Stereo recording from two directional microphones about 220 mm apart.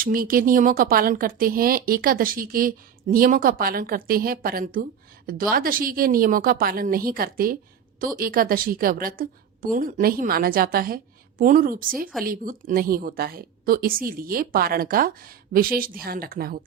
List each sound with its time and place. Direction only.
0.0 s a woman's voice: 40° right (ahead or behind)